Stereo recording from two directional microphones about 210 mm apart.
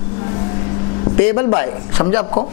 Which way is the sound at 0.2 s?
30° left (ahead or behind).